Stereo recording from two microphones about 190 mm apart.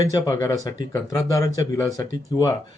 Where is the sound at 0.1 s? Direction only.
20° left (ahead or behind).